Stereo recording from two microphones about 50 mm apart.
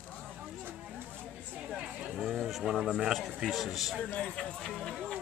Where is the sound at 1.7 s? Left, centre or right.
Centre.